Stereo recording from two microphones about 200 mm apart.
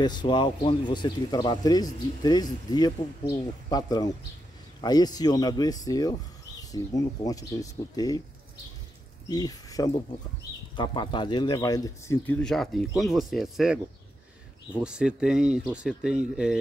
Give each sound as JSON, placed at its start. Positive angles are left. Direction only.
{"t": 0.0, "sound": "speech", "side_deg": 20}
{"t": 9.3, "sound": "speech", "side_deg": 20}
{"t": 12.3, "sound": "speech", "side_deg": 5}
{"t": 14.8, "sound": "speech", "side_deg": -5}